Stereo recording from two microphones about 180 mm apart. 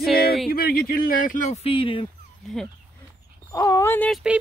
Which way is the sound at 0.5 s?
55° left (ahead or behind).